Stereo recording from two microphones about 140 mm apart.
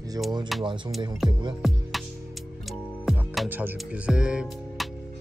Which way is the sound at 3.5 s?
10° right (ahead or behind).